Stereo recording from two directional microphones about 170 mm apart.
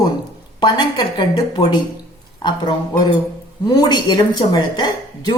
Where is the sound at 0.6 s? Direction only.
25° left (ahead or behind).